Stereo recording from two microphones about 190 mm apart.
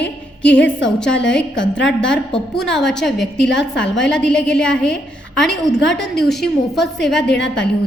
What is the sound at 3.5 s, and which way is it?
Speech, 75° left (ahead or behind).